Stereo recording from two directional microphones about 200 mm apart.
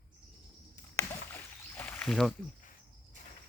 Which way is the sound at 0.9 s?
10° left (ahead or behind).